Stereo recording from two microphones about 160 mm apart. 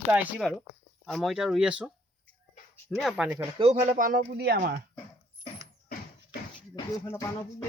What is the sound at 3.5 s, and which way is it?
Speech, 40° right (ahead or behind).